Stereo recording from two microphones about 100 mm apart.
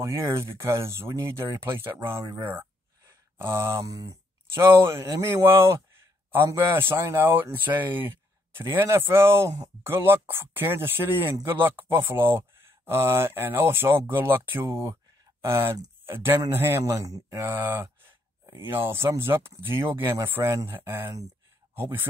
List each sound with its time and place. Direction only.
0.0 s speech: 25° right (ahead or behind)
3.1 s a sound: 25° right (ahead or behind)
3.8 s speech: 35° right (ahead or behind)